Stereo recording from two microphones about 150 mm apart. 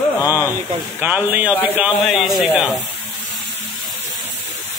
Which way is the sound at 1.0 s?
10° right (ahead or behind).